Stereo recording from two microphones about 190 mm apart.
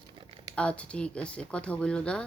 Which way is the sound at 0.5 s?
5° left (ahead or behind).